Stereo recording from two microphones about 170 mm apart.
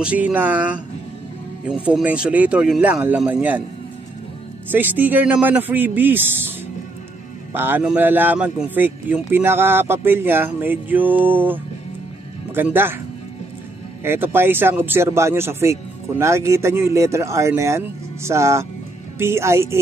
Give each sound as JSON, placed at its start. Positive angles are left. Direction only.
{"t": 0.0, "sound": "speech", "side_deg": -10}
{"t": 1.9, "sound": "speech", "side_deg": -5}
{"t": 4.6, "sound": "speech", "side_deg": -10}
{"t": 7.5, "sound": "speech", "side_deg": -10}
{"t": 14.0, "sound": "speech", "side_deg": -15}